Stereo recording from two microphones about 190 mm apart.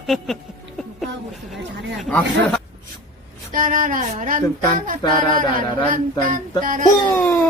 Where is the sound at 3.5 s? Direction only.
45° right (ahead or behind).